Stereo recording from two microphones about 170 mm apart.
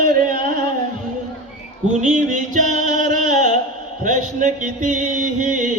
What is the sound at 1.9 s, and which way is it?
Music, 45° right (ahead or behind).